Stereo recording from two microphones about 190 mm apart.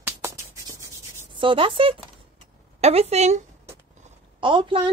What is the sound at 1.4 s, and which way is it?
Speech, 25° right (ahead or behind).